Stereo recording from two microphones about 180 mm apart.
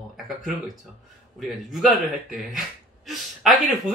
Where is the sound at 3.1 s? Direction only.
Centre (ahead or behind).